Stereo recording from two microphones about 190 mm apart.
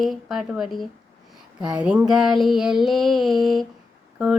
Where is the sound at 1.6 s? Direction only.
5° right (ahead or behind).